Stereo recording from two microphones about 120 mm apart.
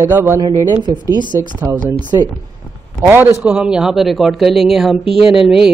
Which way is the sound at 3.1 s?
15° right (ahead or behind).